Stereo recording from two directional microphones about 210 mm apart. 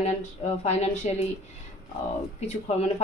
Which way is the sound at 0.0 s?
30° left (ahead or behind).